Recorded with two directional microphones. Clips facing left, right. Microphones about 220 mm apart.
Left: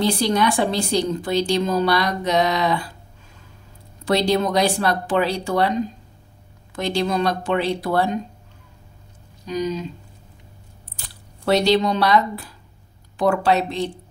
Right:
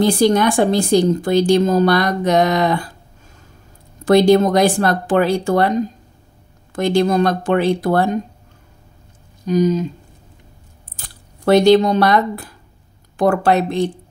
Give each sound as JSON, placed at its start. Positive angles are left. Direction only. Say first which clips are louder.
{"t": 0.0, "sound": "a woman's voice", "louder": "right 6 dB", "side_deg": -50}
{"t": 4.0, "sound": "a woman's voice", "louder": "right 8 dB", "side_deg": -50}
{"t": 9.5, "sound": "a woman's voice", "louder": "right 8 dB", "side_deg": -45}
{"t": 11.0, "sound": "a woman's voice", "louder": "right 2 dB", "side_deg": -50}